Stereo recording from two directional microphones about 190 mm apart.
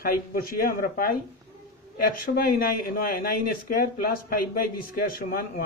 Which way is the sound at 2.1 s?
50° left (ahead or behind).